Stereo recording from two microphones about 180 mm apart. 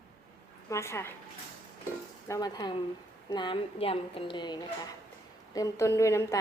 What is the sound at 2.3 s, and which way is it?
A woman's voice, 20° left (ahead or behind).